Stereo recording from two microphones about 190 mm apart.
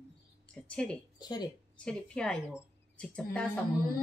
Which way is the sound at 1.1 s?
20° left (ahead or behind).